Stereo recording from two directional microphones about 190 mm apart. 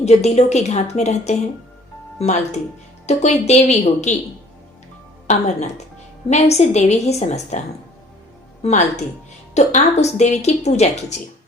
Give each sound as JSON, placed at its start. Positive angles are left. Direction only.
{"t": 0.0, "sound": "speech", "side_deg": 35}
{"t": 5.3, "sound": "speech", "side_deg": 35}
{"t": 8.6, "sound": "speech", "side_deg": 35}